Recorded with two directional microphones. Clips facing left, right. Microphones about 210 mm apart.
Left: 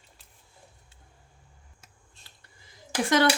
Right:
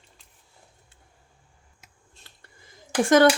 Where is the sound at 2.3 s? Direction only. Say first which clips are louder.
Right 2 dB; 55° right (ahead or behind).